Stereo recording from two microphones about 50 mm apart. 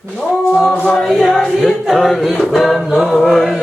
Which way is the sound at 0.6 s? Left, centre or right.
Left.